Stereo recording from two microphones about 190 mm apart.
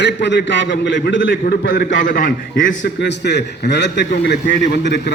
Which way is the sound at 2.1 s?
45° left (ahead or behind).